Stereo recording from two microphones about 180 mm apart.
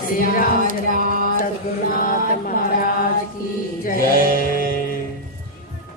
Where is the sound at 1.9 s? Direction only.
50° left (ahead or behind).